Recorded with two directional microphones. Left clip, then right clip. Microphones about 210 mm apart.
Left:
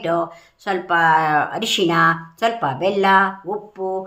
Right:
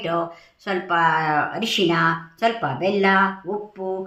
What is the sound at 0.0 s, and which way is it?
Speech, 45° left (ahead or behind).